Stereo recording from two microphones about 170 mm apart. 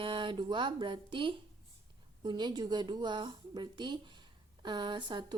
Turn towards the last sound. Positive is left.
turn(degrees=-30)  # may be behind; listen again after turning